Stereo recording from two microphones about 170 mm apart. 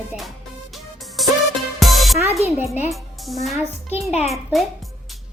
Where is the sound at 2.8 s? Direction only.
Centre (ahead or behind).